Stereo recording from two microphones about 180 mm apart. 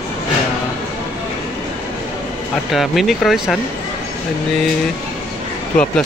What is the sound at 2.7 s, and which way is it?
Speech, centre (ahead or behind).